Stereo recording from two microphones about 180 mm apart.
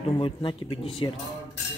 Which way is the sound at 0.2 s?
30° left (ahead or behind).